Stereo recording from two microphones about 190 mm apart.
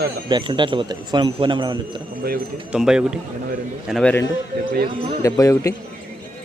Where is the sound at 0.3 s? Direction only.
25° right (ahead or behind).